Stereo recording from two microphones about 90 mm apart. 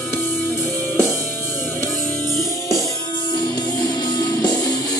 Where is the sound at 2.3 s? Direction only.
35° left (ahead or behind).